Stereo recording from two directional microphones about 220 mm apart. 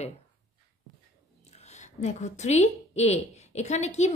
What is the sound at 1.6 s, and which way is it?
A woman's voice, 30° left (ahead or behind).